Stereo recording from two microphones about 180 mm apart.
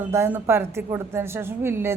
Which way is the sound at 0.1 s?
15° right (ahead or behind).